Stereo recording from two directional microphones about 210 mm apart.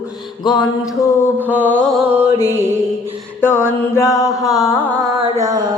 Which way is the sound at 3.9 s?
15° left (ahead or behind).